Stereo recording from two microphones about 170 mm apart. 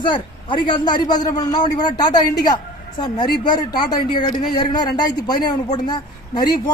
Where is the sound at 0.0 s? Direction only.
30° left (ahead or behind).